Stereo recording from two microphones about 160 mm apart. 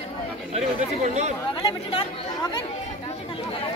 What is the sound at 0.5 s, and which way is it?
Speech, 45° right (ahead or behind).